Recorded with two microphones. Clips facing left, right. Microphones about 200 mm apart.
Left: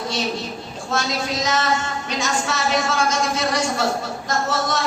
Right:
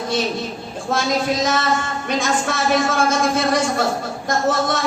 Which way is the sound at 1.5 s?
55° right (ahead or behind).